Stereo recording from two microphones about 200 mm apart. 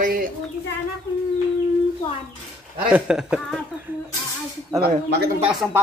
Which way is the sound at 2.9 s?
5° right (ahead or behind).